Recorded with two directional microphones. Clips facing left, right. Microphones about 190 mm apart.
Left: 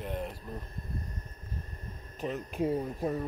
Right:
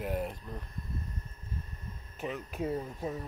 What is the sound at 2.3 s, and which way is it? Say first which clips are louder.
Speech: left 4 dB; 5° right (ahead or behind).